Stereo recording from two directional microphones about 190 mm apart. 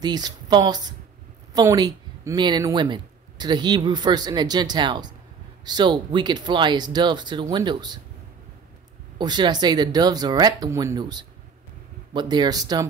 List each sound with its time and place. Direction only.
0.0 s speech: 20° right (ahead or behind)
9.2 s speech: 20° right (ahead or behind)